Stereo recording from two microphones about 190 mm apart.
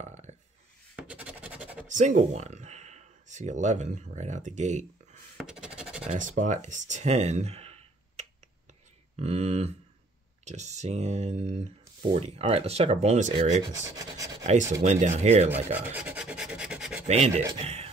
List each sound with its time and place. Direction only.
0.0 s a sound: 40° right (ahead or behind)
0.9 s scratch: 5° right (ahead or behind)
1.9 s speech: 40° right (ahead or behind)
5.4 s scratch: 5° right (ahead or behind)
5.8 s a sound: 5° right (ahead or behind)
6.0 s speech: 45° right (ahead or behind)
13.9 s rub: 20° right (ahead or behind)
14.4 s speech: 40° right (ahead or behind)
15.9 s rub: 5° right (ahead or behind)
17.1 s speech: 35° right (ahead or behind)
17.6 s a sound: 35° right (ahead or behind)